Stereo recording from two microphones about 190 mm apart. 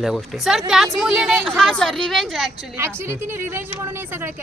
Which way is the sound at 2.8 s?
15° right (ahead or behind).